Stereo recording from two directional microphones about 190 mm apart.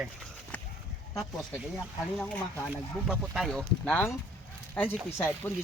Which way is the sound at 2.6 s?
5° right (ahead or behind).